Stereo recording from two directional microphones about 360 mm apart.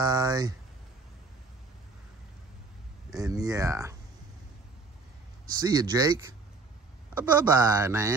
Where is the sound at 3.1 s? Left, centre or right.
Centre.